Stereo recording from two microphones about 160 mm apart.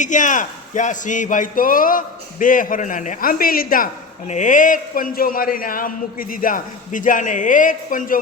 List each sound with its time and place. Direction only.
0.0 s a man's voice: 50° left (ahead or behind)
4.3 s a man's voice: 50° left (ahead or behind)